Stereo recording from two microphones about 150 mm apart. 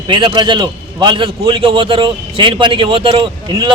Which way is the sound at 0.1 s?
30° right (ahead or behind).